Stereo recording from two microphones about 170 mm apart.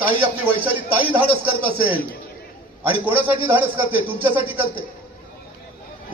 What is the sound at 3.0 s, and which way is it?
A man's voice, 10° right (ahead or behind).